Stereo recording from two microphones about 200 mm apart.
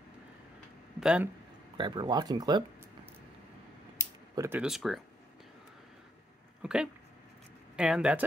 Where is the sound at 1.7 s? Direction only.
25° right (ahead or behind).